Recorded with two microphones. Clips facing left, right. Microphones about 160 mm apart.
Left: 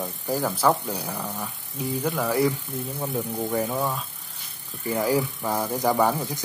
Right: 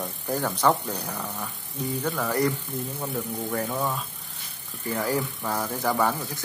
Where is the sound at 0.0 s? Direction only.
5° left (ahead or behind).